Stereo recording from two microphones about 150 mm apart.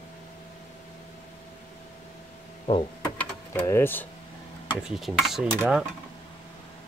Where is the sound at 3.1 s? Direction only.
15° left (ahead or behind).